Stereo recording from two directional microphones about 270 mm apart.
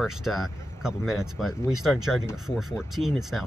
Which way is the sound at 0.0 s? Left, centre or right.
Centre.